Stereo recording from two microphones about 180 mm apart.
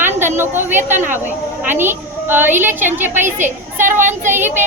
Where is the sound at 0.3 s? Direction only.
10° right (ahead or behind).